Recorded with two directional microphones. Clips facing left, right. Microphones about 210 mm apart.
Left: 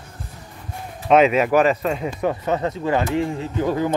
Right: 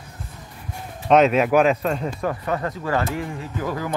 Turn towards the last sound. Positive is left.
turn(degrees=25)  # may be behind; listen again after turning